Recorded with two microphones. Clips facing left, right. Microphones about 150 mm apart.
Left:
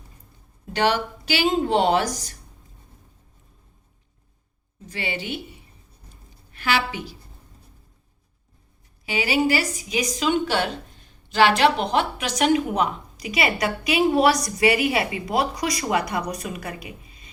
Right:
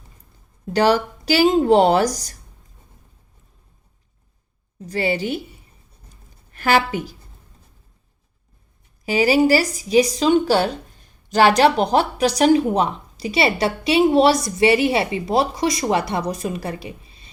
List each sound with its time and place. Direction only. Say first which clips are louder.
0.7 s a woman's voice: right 5 dB; 40° right (ahead or behind)
4.9 s a woman's voice: right 8 dB; 40° right (ahead or behind)
6.5 s a woman's voice: right 6 dB; 45° right (ahead or behind)
9.0 s a woman's voice: right 6 dB; 40° right (ahead or behind)